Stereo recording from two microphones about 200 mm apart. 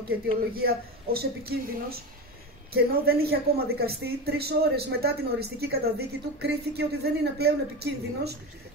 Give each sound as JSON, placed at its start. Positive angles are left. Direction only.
{"t": 0.6, "sound": "a woman's voice", "side_deg": -50}